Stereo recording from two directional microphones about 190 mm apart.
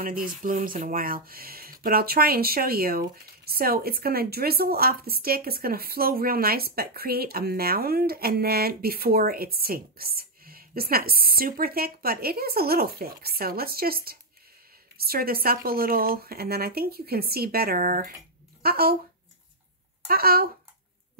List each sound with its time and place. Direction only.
0.0 s speech: 45° right (ahead or behind)
20.1 s speech: 50° right (ahead or behind)